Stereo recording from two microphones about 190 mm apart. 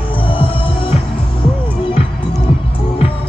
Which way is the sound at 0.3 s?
30° left (ahead or behind).